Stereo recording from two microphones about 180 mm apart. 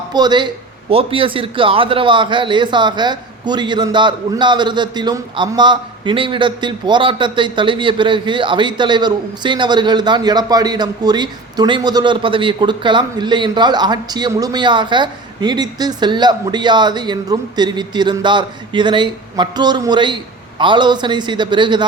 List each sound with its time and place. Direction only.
0.1 s a man's voice: 25° right (ahead or behind)